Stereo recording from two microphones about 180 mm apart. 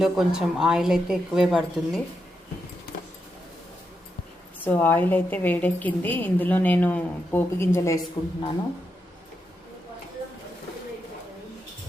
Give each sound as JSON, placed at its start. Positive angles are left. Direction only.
{"t": 0.0, "sound": "a woman's voice", "side_deg": -5}
{"t": 4.6, "sound": "a woman's voice", "side_deg": 10}
{"t": 8.2, "sound": "a woman's voice", "side_deg": 25}